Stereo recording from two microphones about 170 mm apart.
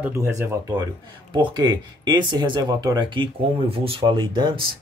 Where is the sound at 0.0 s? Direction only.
15° right (ahead or behind).